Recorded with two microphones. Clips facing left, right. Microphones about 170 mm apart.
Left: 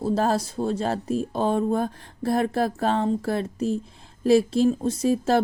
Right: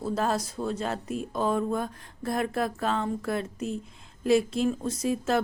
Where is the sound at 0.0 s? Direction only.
30° left (ahead or behind).